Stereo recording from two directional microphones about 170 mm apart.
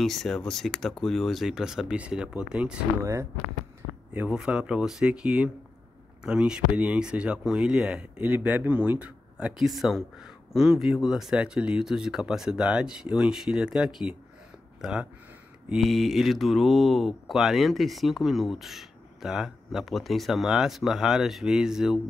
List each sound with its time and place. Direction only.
0.0 s speech: centre (ahead or behind)
3.0 s speech: 15° right (ahead or behind)
4.1 s speech: 5° right (ahead or behind)